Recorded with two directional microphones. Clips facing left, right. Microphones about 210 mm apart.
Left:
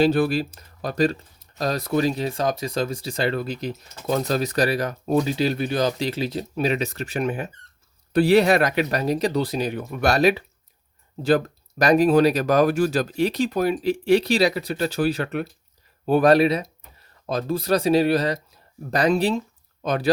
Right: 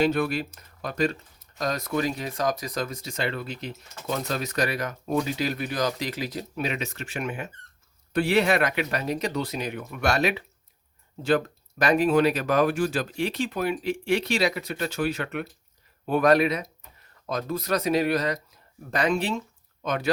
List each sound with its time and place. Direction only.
0.0 s speech: 35° left (ahead or behind)